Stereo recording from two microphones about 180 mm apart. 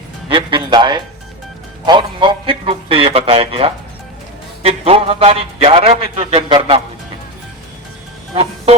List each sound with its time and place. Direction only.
0.3 s a man's voice: 30° right (ahead or behind)
8.3 s music: 30° right (ahead or behind)